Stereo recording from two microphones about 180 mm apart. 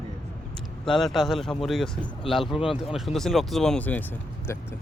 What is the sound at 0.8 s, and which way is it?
Speech, centre (ahead or behind).